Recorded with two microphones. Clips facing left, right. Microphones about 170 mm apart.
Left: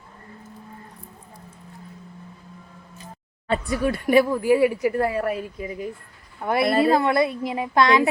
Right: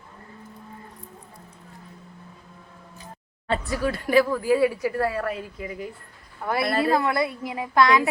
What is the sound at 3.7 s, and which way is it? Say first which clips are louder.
A woman's voice: left 5 dB; 20° left (ahead or behind).